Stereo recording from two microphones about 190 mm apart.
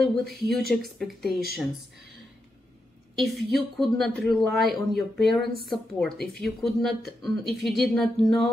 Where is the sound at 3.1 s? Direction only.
Centre (ahead or behind).